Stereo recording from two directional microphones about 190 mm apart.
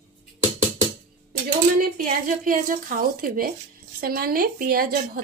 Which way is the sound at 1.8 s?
45° right (ahead or behind).